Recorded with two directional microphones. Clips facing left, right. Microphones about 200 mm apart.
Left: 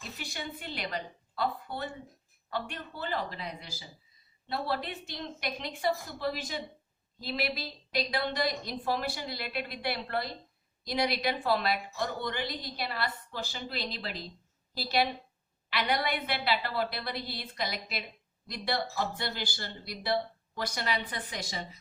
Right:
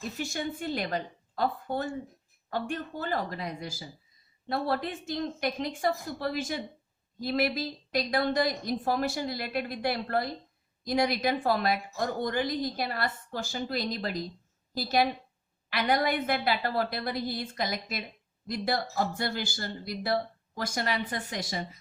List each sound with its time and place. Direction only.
0.2 s a woman's voice: 45° right (ahead or behind)